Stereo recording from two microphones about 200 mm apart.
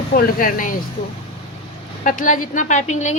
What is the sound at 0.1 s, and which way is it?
Speech, 45° left (ahead or behind).